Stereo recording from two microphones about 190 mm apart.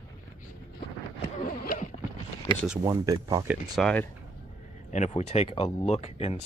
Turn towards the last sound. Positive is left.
turn(degrees=35)  # may be behind; listen again after turning